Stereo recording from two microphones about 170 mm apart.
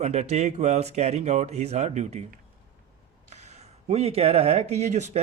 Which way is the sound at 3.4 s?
40° right (ahead or behind).